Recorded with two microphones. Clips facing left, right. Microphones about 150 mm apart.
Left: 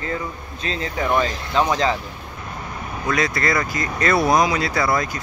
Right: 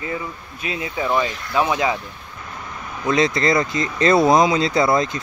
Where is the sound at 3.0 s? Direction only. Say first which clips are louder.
Right 4 dB; 25° right (ahead or behind).